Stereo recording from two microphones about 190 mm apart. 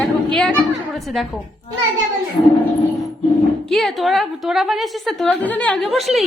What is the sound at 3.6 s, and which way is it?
A woman's voice, centre (ahead or behind).